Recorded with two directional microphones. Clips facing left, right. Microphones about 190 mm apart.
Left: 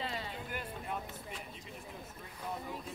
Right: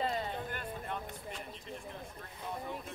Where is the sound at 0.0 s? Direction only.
45° right (ahead or behind).